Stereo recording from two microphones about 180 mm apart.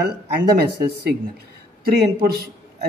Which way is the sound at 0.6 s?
65° right (ahead or behind).